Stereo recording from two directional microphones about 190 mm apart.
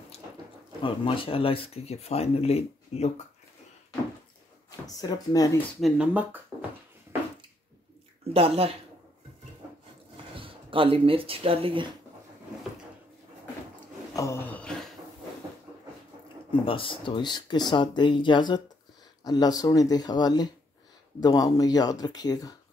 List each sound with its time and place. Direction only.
0.8 s speech: 30° left (ahead or behind)
4.6 s a sound: 20° left (ahead or behind)
5.8 s speech: 5° right (ahead or behind)
8.3 s speech: 30° right (ahead or behind)
10.3 s speech: 30° right (ahead or behind)
14.1 s a sound: 15° left (ahead or behind)
16.6 s speech: 30° left (ahead or behind)